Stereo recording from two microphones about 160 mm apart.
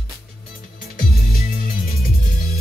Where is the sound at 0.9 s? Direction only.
65° left (ahead or behind).